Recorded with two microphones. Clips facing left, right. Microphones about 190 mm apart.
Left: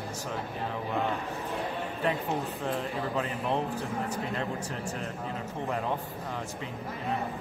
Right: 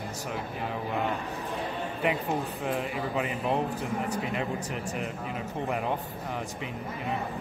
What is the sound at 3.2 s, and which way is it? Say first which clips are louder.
Speech: right 3 dB; 15° right (ahead or behind).